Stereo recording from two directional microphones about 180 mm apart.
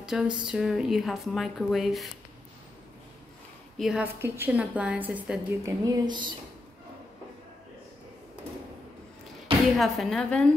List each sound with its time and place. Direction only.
0.0 s a sound: 5° right (ahead or behind)
0.4 s a woman's voice: 5° right (ahead or behind)
3.7 s a woman's voice: 5° right (ahead or behind)
5.9 s speech: 25° right (ahead or behind)
9.8 s a woman's voice: centre (ahead or behind)